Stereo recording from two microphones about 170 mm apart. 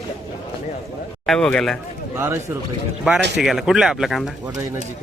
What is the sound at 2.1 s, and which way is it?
Speech, 15° right (ahead or behind).